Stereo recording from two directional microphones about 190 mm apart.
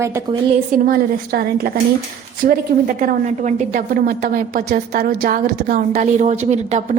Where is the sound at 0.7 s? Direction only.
50° right (ahead or behind).